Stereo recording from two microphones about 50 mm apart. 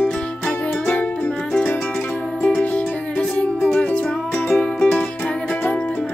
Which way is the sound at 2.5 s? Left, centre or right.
Left.